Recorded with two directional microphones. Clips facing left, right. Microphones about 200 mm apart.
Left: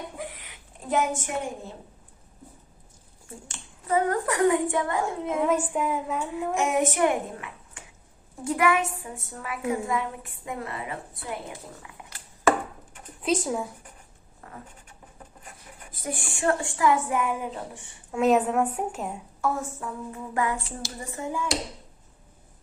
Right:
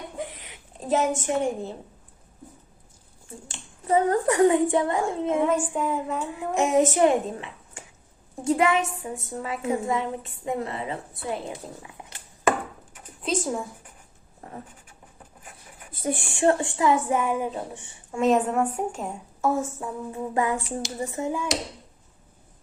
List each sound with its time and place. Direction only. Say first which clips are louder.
0.2 s a sound: right 3 dB; 25° right (ahead or behind)
3.8 s a woman's voice: right 3 dB; 25° right (ahead or behind)
5.4 s a woman's voice: left 3 dB; 5° left (ahead or behind)
6.6 s a woman's voice: right 5 dB; 25° right (ahead or behind)
13.2 s a woman's voice: left 1 dB; 5° left (ahead or behind)
14.4 s a sound: right 4 dB; 25° right (ahead or behind)
15.9 s a woman's voice: right 5 dB; 25° right (ahead or behind)
18.1 s a woman's voice: even; 5° left (ahead or behind)
19.4 s a woman's voice: right 4 dB; 25° right (ahead or behind)